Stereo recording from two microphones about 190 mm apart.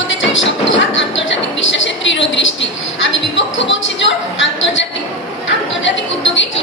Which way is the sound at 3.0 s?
75° left (ahead or behind).